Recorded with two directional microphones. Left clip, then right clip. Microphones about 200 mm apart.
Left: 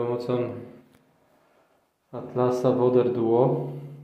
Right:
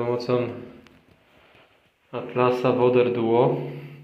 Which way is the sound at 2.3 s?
10° left (ahead or behind).